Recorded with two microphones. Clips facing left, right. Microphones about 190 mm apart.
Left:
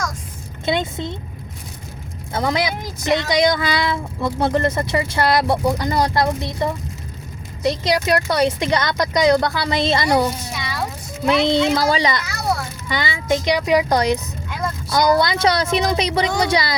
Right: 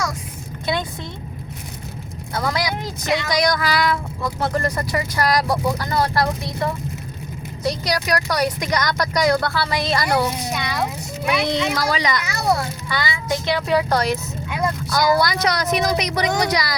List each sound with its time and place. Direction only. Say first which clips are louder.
0.6 s speech: left 3 dB; 25° left (ahead or behind)
2.3 s speech: left 2 dB; 20° left (ahead or behind)
11.3 s a child's voice: left 5 dB; 25° left (ahead or behind)